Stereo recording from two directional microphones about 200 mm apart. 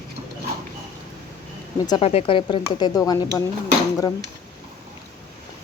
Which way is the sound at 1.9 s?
30° left (ahead or behind).